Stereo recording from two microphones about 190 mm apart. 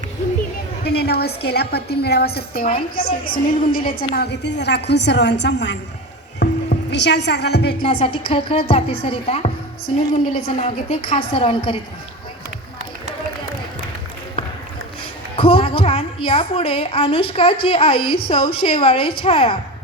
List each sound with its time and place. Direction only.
0.9 s a woman's voice: 55° left (ahead or behind)
6.4 s music: 65° left (ahead or behind)
7.9 s a woman's voice: 30° left (ahead or behind)
10.6 s a woman's voice: 30° left (ahead or behind)
15.4 s a woman's voice: 30° left (ahead or behind)